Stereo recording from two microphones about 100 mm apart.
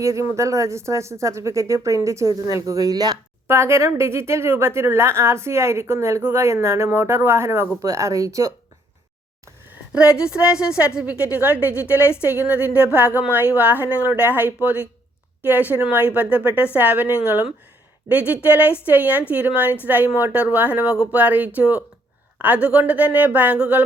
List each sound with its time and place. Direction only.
0.0 s speech: 30° right (ahead or behind)
3.4 s speech: 25° right (ahead or behind)
10.2 s speech: 10° right (ahead or behind)
11.9 s speech: 25° left (ahead or behind)
12.5 s speech: 15° right (ahead or behind)